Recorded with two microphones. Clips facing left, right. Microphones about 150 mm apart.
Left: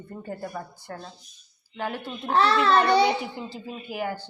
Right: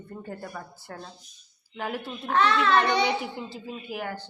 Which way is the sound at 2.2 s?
35° left (ahead or behind).